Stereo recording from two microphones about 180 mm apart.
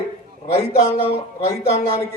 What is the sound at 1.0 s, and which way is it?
Speech, 35° left (ahead or behind).